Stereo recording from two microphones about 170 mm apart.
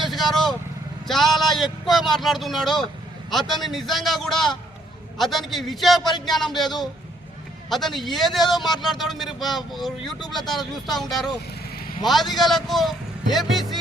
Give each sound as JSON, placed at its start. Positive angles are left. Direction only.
{"t": 0.0, "sound": "vehicle", "side_deg": 0}
{"t": 1.0, "sound": "a man's voice", "side_deg": 0}